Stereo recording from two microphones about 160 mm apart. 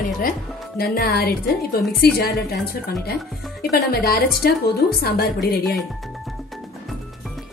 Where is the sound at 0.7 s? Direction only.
75° left (ahead or behind).